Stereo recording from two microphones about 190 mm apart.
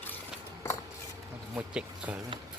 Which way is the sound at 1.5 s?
5° right (ahead or behind).